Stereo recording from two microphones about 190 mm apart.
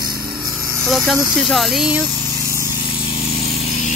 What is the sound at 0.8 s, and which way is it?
Speech, centre (ahead or behind).